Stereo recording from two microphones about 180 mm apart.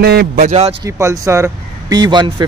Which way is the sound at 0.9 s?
15° right (ahead or behind).